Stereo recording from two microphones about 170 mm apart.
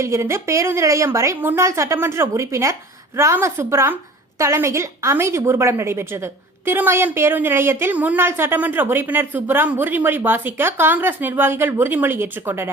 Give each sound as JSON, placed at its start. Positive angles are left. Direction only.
{"t": 0.0, "sound": "a woman's voice", "side_deg": -15}